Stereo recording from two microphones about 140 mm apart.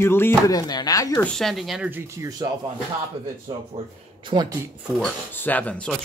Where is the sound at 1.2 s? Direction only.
5° left (ahead or behind).